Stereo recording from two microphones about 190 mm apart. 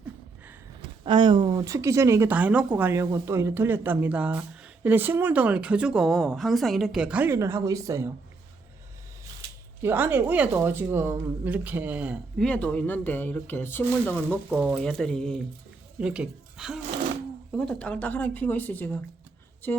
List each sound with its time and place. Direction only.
1.0 s a woman's voice: 25° right (ahead or behind)
9.8 s a woman's voice: 10° right (ahead or behind)
12.5 s speech: 5° left (ahead or behind)
14.3 s a woman's voice: 10° right (ahead or behind)
14.8 s speech: 5° left (ahead or behind)